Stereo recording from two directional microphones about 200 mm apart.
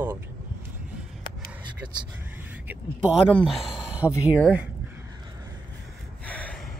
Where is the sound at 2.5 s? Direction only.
5° right (ahead or behind).